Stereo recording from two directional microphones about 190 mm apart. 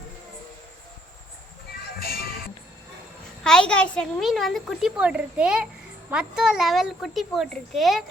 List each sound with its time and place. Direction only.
2.0 s music: 50° left (ahead or behind)
3.4 s a woman's voice: 5° left (ahead or behind)